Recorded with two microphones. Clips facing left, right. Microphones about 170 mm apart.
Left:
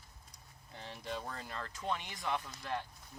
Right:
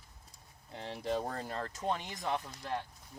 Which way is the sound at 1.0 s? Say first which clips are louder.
Right 7 dB; 40° right (ahead or behind).